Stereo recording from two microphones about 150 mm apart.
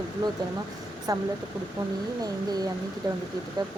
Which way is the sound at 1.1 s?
25° right (ahead or behind).